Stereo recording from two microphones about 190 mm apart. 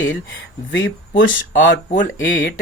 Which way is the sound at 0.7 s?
65° left (ahead or behind).